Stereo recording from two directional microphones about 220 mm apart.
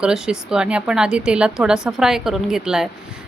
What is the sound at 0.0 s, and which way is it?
A woman's voice, 5° right (ahead or behind).